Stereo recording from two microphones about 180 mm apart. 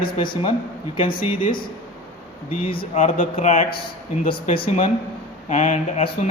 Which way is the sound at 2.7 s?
30° left (ahead or behind).